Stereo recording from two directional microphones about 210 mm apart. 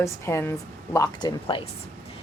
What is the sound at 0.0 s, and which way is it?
A woman's voice, 15° left (ahead or behind).